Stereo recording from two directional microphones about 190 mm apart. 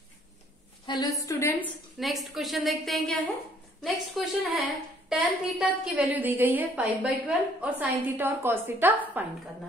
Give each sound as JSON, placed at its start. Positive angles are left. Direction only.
{"t": 0.8, "sound": "a woman's voice", "side_deg": 20}
{"t": 2.0, "sound": "a woman's voice", "side_deg": 0}